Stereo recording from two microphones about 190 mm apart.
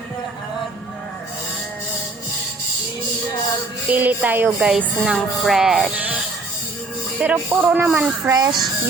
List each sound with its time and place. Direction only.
3.8 s speech: 10° right (ahead or behind)
7.2 s speech: 10° right (ahead or behind)
8.4 s speech: 20° right (ahead or behind)